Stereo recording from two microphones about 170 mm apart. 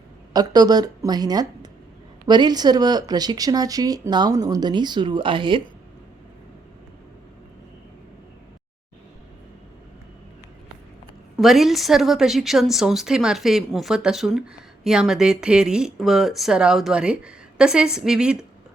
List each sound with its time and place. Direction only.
0.3 s speech: 25° right (ahead or behind)
11.3 s a woman's voice: centre (ahead or behind)